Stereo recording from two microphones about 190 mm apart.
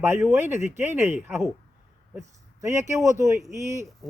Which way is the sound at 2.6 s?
15° right (ahead or behind).